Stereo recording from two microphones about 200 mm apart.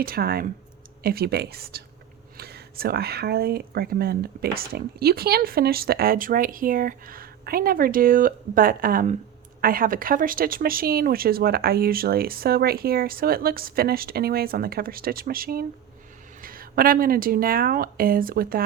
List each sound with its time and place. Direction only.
0.0 s speech: 50° right (ahead or behind)